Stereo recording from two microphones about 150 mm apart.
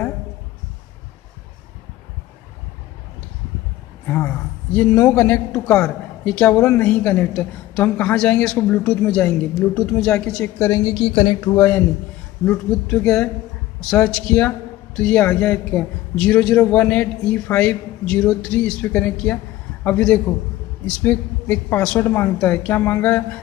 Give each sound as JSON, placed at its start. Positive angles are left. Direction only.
{"t": 4.1, "sound": "a man's voice", "side_deg": 10}
{"t": 10.7, "sound": "speech", "side_deg": 30}
{"t": 11.5, "sound": "a man's voice", "side_deg": 15}
{"t": 12.4, "sound": "a man's voice", "side_deg": 5}